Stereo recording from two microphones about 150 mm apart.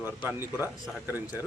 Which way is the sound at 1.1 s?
15° right (ahead or behind).